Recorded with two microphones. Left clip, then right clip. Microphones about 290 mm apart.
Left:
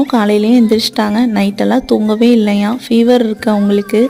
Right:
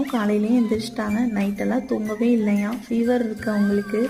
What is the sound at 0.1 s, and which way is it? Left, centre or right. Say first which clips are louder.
Speech: left 11 dB; left.